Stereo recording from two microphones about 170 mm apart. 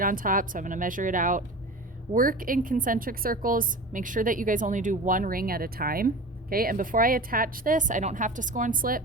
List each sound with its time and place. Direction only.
0.0 s a woman's voice: 55° right (ahead or behind)